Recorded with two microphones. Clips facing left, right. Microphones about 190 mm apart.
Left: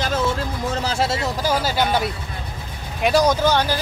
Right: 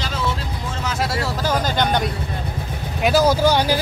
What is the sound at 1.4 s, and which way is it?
Speech, 10° left (ahead or behind).